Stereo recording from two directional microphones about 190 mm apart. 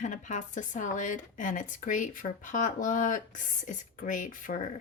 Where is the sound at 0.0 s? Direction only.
40° left (ahead or behind).